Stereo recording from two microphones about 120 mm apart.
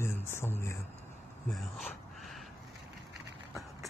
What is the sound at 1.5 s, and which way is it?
Dog, centre (ahead or behind).